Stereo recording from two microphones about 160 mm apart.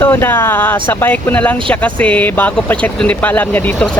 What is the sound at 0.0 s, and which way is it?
Speech, 15° left (ahead or behind).